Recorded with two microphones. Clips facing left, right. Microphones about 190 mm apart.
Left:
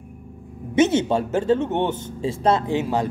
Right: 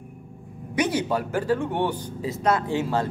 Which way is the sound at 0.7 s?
25° left (ahead or behind).